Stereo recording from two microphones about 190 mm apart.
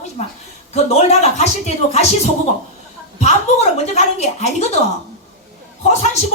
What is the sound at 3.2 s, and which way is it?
Speech, 35° left (ahead or behind).